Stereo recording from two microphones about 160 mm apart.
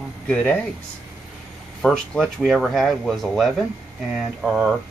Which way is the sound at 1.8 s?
5° left (ahead or behind).